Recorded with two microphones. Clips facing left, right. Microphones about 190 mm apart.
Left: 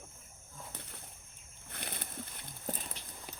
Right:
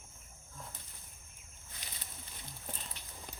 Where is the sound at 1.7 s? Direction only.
60° left (ahead or behind).